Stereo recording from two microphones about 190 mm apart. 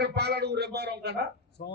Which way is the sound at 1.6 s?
55° left (ahead or behind).